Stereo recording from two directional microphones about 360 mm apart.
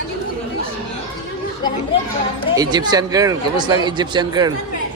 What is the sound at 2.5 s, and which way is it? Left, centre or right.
Speech, centre.